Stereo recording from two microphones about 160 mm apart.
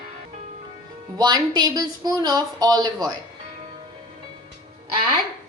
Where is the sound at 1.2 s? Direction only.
25° right (ahead or behind).